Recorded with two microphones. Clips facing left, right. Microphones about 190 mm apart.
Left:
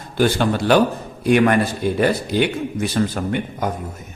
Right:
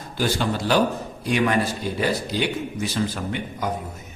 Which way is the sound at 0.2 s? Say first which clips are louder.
Left 6 dB; 60° left (ahead or behind).